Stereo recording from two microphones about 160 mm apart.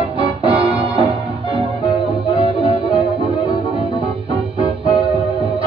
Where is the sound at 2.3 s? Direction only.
35° right (ahead or behind).